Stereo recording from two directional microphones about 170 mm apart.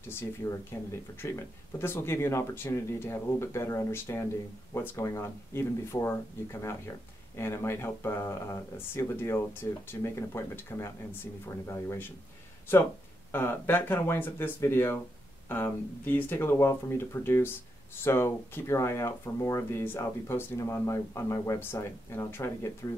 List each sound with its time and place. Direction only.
0.1 s speech: 15° left (ahead or behind)
13.3 s speech: 15° left (ahead or behind)